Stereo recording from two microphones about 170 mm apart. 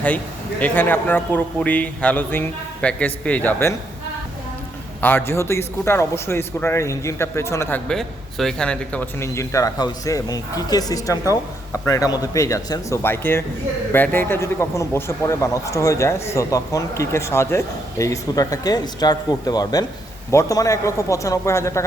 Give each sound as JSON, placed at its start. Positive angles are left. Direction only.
{"t": 0.6, "sound": "speech", "side_deg": 10}
{"t": 4.9, "sound": "speech", "side_deg": 10}
{"t": 7.9, "sound": "speech", "side_deg": 0}